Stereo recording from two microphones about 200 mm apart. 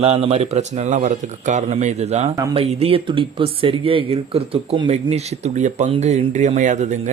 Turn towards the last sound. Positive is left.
turn(degrees=-35)  # may be behind; listen again after turning